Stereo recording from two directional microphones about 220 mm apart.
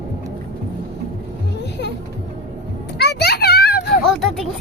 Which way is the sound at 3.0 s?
45° left (ahead or behind).